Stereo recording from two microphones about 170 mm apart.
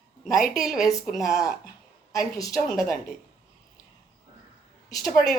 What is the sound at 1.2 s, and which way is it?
Speech, 20° left (ahead or behind).